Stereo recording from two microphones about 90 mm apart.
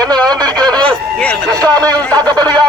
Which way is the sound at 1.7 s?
45° right (ahead or behind).